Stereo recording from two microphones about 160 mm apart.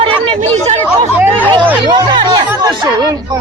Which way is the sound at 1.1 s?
10° right (ahead or behind).